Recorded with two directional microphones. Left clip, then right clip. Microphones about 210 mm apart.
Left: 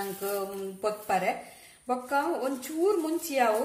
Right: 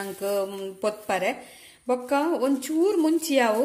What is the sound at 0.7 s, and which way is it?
A woman's voice, 50° right (ahead or behind).